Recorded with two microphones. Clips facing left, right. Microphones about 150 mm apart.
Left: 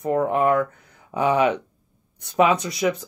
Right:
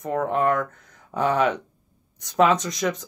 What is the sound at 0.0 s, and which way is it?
Speech, 5° left (ahead or behind).